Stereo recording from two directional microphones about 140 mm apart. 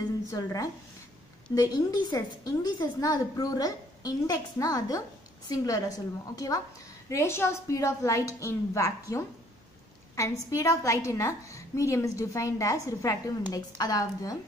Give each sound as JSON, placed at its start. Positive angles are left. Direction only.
{"t": 0.3, "sound": "a woman's voice", "side_deg": 25}
{"t": 10.1, "sound": "a woman's voice", "side_deg": 20}